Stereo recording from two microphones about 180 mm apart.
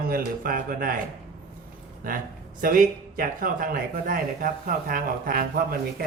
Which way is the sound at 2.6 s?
50° right (ahead or behind).